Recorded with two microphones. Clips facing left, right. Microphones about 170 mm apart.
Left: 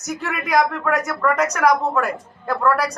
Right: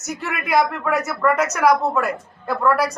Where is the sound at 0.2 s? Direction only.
Centre (ahead or behind).